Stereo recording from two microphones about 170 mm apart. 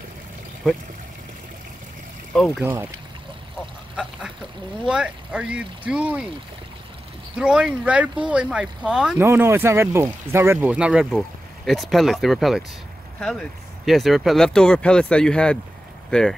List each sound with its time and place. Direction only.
2.3 s speech: centre (ahead or behind)
2.6 s speech: 15° right (ahead or behind)
3.9 s duck: centre (ahead or behind)
4.8 s speech: 5° right (ahead or behind)
7.3 s speech: 5° right (ahead or behind)